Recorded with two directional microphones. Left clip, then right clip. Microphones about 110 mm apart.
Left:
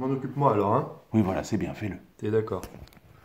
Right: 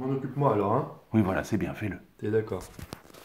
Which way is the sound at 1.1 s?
5° right (ahead or behind).